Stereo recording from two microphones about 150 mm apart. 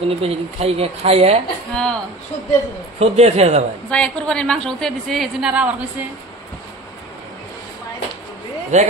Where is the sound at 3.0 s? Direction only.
45° right (ahead or behind).